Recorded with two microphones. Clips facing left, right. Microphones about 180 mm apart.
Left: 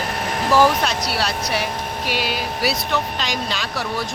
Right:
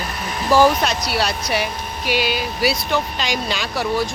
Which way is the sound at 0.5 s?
Centre (ahead or behind).